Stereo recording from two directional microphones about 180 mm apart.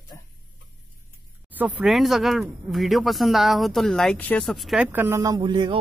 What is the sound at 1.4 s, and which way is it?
Speech, 10° right (ahead or behind).